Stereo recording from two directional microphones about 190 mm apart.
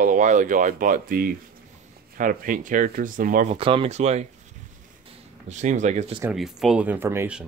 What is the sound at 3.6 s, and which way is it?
Speech, 30° right (ahead or behind).